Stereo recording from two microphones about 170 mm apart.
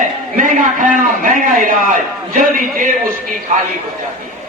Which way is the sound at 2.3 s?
50° right (ahead or behind).